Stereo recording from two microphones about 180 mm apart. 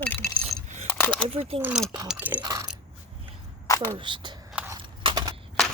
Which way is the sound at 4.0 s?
25° right (ahead or behind).